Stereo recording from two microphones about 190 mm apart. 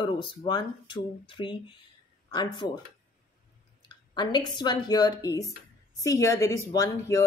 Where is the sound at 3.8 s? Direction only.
20° left (ahead or behind).